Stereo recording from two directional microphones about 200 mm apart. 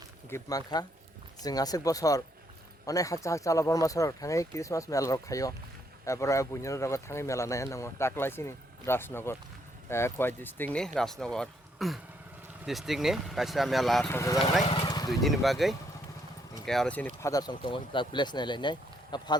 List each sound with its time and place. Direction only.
0.3 s speech: 15° left (ahead or behind)
14.1 s speech: 15° left (ahead or behind)
14.6 s vehicle: 30° left (ahead or behind)
15.2 s speech: centre (ahead or behind)
17.2 s speech: 15° left (ahead or behind)